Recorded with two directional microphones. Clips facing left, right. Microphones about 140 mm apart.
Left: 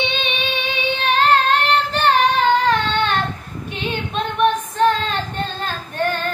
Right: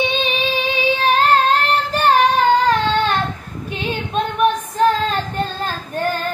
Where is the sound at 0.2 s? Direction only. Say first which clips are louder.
Right 4 dB; 35° right (ahead or behind).